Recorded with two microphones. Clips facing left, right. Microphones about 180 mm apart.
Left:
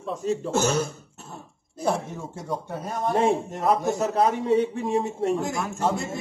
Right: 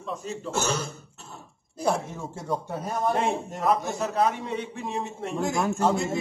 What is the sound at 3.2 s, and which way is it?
A man's voice, 35° left (ahead or behind).